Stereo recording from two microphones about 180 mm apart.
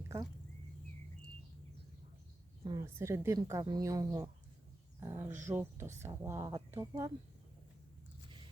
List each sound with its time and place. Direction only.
2.6 s a woman's voice: 20° right (ahead or behind)